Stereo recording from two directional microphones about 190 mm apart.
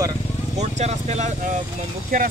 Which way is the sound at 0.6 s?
35° right (ahead or behind).